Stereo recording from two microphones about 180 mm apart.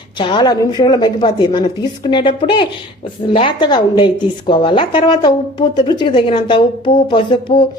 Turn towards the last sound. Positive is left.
turn(degrees=25)  # may be behind; listen again after turning